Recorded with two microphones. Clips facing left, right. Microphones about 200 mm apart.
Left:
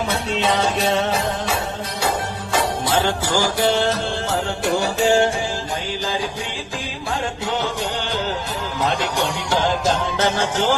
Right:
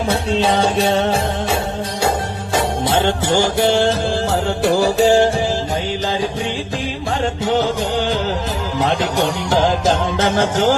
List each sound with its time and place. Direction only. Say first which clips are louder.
0.1 s music: right 7 dB; 30° right (ahead or behind)
10.2 s music: right 4 dB; 45° right (ahead or behind)